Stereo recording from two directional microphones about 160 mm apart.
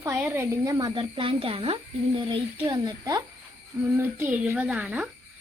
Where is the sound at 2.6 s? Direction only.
25° right (ahead or behind).